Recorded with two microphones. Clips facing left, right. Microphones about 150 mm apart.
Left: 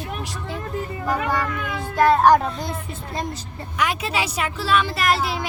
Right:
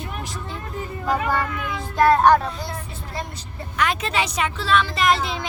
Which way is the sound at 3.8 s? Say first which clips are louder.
Right 1 dB; 10° left (ahead or behind).